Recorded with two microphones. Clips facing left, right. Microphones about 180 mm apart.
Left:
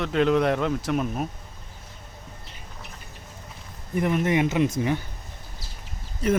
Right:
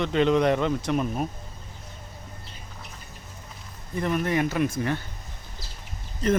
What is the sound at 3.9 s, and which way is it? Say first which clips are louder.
Speech: left 2 dB; 20° left (ahead or behind).